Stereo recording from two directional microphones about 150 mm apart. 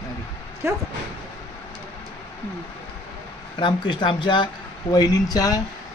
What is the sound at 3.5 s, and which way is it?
A man's voice, 30° left (ahead or behind).